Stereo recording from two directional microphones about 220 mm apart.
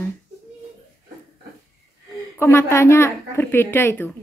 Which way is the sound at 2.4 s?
10° left (ahead or behind).